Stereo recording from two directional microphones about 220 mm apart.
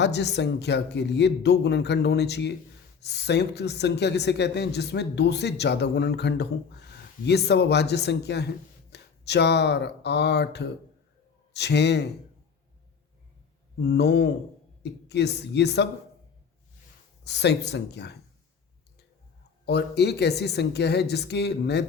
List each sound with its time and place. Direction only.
0.0 s speech: 50° left (ahead or behind)
13.7 s speech: 50° left (ahead or behind)
17.2 s speech: 50° left (ahead or behind)
19.6 s speech: 50° left (ahead or behind)